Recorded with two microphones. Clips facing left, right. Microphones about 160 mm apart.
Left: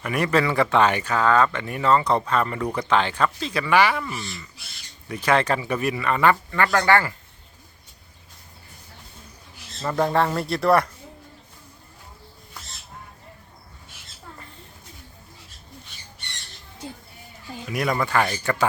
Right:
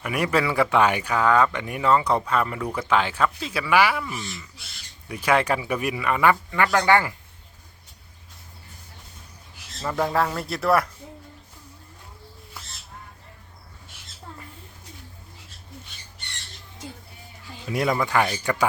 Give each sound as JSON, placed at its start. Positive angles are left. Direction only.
{"t": 0.0, "sound": "speech", "side_deg": -10}
{"t": 9.8, "sound": "speech", "side_deg": 0}
{"t": 17.7, "sound": "speech", "side_deg": -25}